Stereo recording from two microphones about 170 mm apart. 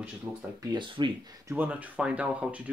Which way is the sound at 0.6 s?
25° right (ahead or behind).